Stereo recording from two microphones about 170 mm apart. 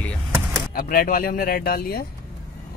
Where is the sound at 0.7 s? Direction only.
60° left (ahead or behind).